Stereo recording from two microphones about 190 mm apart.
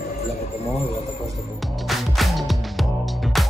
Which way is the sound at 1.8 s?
Centre (ahead or behind).